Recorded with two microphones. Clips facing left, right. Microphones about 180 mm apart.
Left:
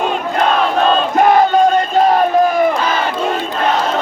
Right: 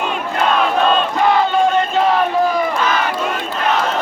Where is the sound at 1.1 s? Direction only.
45° left (ahead or behind).